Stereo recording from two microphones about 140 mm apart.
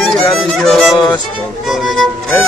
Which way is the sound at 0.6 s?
Centre (ahead or behind).